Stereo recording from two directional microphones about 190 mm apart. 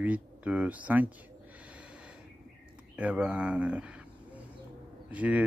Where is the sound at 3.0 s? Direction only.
5° right (ahead or behind).